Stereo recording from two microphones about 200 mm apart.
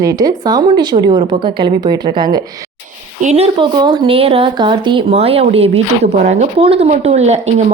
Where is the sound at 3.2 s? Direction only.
35° right (ahead or behind).